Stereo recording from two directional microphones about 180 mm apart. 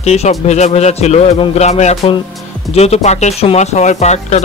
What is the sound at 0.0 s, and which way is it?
Speech, 35° left (ahead or behind).